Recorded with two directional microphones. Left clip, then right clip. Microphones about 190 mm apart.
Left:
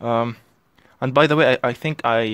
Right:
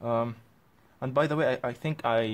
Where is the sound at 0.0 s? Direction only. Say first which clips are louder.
Left 8 dB; 35° left (ahead or behind).